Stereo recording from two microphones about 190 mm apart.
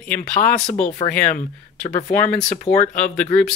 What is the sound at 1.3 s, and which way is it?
Speech, 40° left (ahead or behind).